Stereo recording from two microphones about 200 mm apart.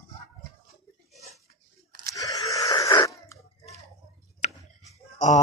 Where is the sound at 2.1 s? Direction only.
15° left (ahead or behind).